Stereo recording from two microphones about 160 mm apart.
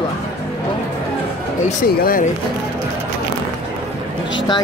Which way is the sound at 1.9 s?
70° left (ahead or behind).